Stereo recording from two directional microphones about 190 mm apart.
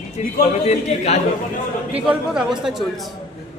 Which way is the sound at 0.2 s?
40° left (ahead or behind).